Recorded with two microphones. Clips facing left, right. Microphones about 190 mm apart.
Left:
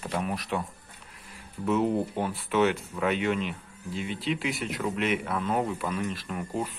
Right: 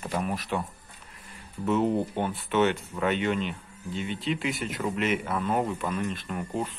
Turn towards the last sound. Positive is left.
turn(degrees=0)  # may be behind; listen again after turning